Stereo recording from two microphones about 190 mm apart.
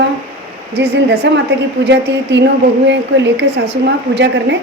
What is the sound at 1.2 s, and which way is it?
A woman's voice, 65° right (ahead or behind).